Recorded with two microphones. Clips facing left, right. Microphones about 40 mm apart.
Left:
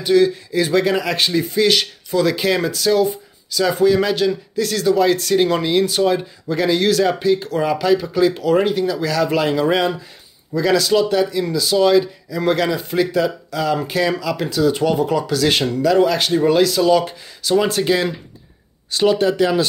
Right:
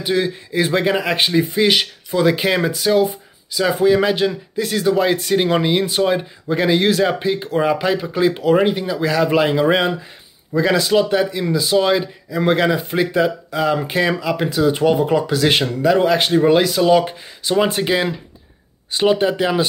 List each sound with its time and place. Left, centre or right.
0.0 s speech: right